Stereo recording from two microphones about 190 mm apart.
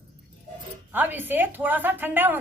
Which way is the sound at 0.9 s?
10° right (ahead or behind).